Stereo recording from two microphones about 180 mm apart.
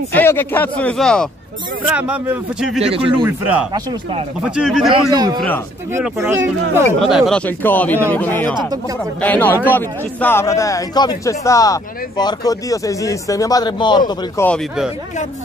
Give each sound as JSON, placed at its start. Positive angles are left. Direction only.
{"t": 0.1, "sound": "speech", "side_deg": 10}
{"t": 1.8, "sound": "a man's voice", "side_deg": -10}
{"t": 2.8, "sound": "speech", "side_deg": -30}
{"t": 3.3, "sound": "a man's voice", "side_deg": -10}
{"t": 5.1, "sound": "a man's voice", "side_deg": -20}
{"t": 7.0, "sound": "speech", "side_deg": 0}
{"t": 14.4, "sound": "speech", "side_deg": 5}